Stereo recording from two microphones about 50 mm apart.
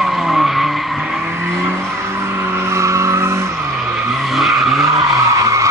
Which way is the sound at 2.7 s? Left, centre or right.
Right.